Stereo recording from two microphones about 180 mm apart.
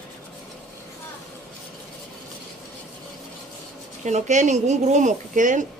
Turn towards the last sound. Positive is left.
turn(degrees=-45)  # may be behind; listen again after turning